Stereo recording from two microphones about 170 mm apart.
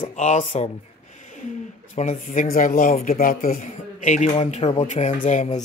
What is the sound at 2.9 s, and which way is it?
Speech, 40° left (ahead or behind).